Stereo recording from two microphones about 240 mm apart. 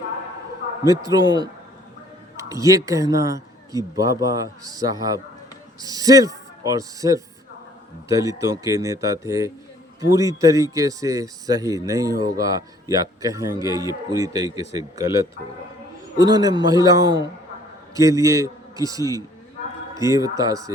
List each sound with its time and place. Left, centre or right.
0.9 s a man's voice: centre